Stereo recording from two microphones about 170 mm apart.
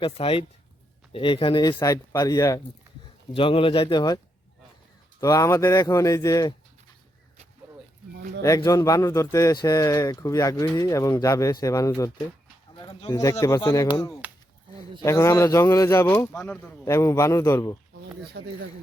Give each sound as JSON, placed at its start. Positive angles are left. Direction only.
{"t": 0.0, "sound": "speech", "side_deg": 35}
{"t": 3.3, "sound": "speech", "side_deg": 30}
{"t": 5.2, "sound": "speech", "side_deg": 20}
{"t": 8.4, "sound": "a man's voice", "side_deg": 20}
{"t": 16.8, "sound": "a man's voice", "side_deg": 20}
{"t": 18.3, "sound": "speech", "side_deg": -80}